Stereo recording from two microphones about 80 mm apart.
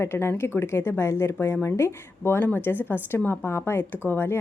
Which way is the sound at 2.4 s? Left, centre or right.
Left.